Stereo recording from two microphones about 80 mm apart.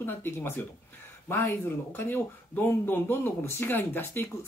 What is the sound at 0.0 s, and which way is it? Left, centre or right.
Speech, left.